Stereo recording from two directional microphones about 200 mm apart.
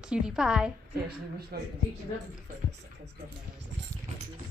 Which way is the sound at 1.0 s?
50° right (ahead or behind).